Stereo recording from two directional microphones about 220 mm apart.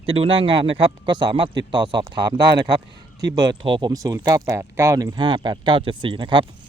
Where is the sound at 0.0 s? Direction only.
25° right (ahead or behind).